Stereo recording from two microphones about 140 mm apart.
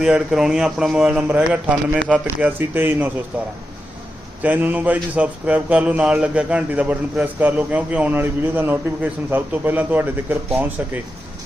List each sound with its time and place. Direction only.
0.0 s speech: 5° right (ahead or behind)